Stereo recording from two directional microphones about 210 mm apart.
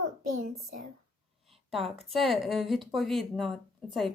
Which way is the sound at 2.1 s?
Centre (ahead or behind).